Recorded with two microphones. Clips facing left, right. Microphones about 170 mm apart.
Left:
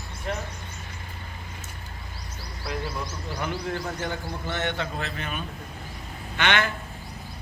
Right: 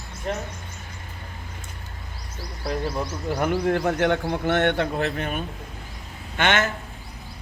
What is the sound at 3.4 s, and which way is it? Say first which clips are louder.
A man's voice: right 8 dB; 55° right (ahead or behind).